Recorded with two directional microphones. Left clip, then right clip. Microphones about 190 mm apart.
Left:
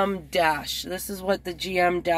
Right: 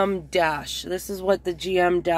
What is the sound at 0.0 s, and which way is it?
Speech, 15° right (ahead or behind).